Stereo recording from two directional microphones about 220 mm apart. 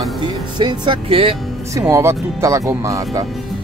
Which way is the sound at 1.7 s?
10° right (ahead or behind).